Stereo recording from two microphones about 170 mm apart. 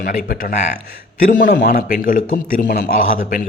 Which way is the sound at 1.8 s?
55° left (ahead or behind).